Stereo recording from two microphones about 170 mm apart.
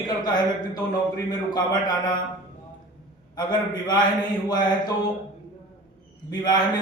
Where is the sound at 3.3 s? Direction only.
25° left (ahead or behind).